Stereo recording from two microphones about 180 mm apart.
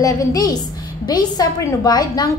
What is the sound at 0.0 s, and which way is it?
A woman's voice, 20° left (ahead or behind).